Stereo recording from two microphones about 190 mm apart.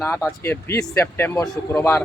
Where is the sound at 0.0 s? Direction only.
15° left (ahead or behind).